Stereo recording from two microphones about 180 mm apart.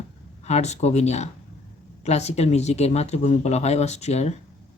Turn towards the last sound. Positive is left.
turn(degrees=35)  # may be behind; listen again after turning